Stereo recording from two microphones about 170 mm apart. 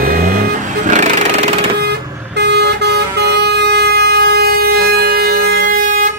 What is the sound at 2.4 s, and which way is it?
Vehicle, 80° right.